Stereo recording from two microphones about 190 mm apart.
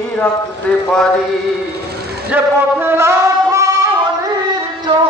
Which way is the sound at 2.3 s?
10° right (ahead or behind).